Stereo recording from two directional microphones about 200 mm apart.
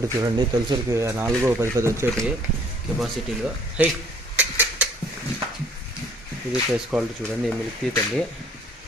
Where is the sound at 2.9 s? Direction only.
5° right (ahead or behind).